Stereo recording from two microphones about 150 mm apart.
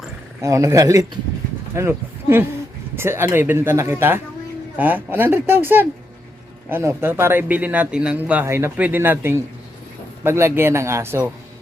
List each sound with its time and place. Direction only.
0.4 s speech: 20° right (ahead or behind)